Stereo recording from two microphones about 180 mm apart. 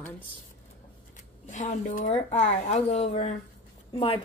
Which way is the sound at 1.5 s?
40° left (ahead or behind).